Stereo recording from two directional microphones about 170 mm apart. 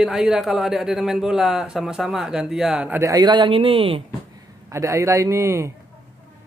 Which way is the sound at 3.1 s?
25° right (ahead or behind).